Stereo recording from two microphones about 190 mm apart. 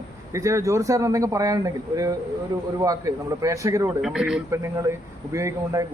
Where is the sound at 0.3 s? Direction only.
15° right (ahead or behind).